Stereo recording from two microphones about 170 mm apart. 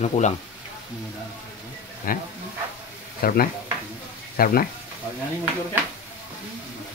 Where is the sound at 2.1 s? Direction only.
55° left (ahead or behind).